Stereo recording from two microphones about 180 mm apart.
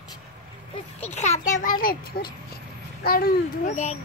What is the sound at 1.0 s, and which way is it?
Speech, 40° left (ahead or behind).